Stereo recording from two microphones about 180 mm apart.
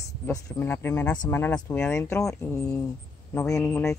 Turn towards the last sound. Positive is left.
turn(degrees=15)  # may be behind; listen again after turning